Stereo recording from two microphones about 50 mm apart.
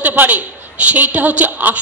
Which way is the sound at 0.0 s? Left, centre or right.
Right.